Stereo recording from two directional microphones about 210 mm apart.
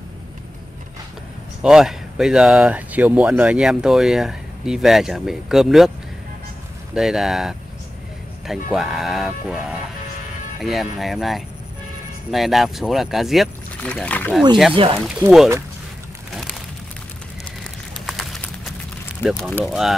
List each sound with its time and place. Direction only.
1.6 s speech: 5° right (ahead or behind)
7.0 s speech: centre (ahead or behind)
8.7 s speech: centre (ahead or behind)
14.7 s speech: 25° right (ahead or behind)
15.0 s speech: centre (ahead or behind)
18.0 s a sound: centre (ahead or behind)
19.2 s speech: centre (ahead or behind)